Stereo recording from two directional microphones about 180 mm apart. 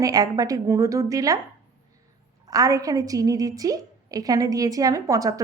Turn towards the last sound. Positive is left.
turn(degrees=-20)  # may be behind; listen again after turning